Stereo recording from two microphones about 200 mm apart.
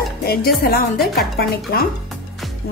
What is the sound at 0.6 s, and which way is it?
Speech, 45° left (ahead or behind).